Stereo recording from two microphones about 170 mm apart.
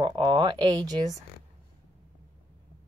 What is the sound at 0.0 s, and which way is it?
Speech, 30° right (ahead or behind).